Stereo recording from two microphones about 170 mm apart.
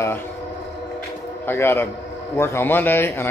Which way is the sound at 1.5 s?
15° left (ahead or behind).